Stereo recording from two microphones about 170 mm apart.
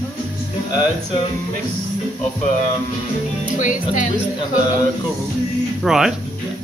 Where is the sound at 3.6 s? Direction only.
50° left (ahead or behind).